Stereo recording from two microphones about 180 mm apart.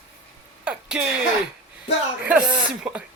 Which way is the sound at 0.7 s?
5° right (ahead or behind).